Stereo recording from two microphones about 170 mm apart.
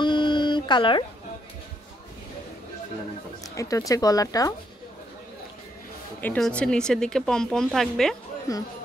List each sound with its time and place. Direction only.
0.0 s a sound: 25° left (ahead or behind)
3.5 s speech: 20° left (ahead or behind)
6.2 s a woman's voice: 5° left (ahead or behind)
8.5 s speech: 20° left (ahead or behind)